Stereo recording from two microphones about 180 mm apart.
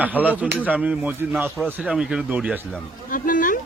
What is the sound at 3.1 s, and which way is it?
Speech, 50° left (ahead or behind).